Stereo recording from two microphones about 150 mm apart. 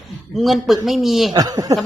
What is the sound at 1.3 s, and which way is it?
Speech, 25° right (ahead or behind).